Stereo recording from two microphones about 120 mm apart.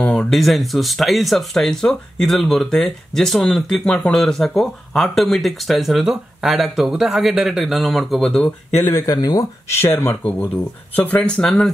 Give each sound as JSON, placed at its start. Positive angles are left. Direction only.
{"t": 0.0, "sound": "speech", "side_deg": 5}
{"t": 8.8, "sound": "speech", "side_deg": 20}